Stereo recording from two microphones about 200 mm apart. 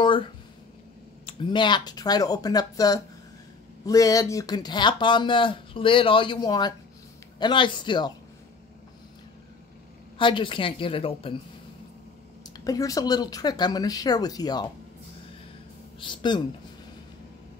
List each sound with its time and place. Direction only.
1.2 s speech: 25° left (ahead or behind)
10.1 s speech: 25° left (ahead or behind)
12.4 s speech: 20° left (ahead or behind)
16.0 s speech: 25° left (ahead or behind)